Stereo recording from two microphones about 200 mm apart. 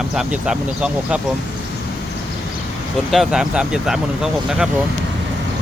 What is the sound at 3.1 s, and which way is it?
Speech, centre (ahead or behind).